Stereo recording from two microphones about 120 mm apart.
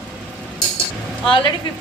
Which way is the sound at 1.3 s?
45° left (ahead or behind).